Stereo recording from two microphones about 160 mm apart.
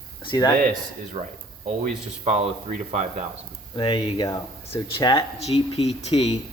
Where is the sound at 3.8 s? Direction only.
30° left (ahead or behind).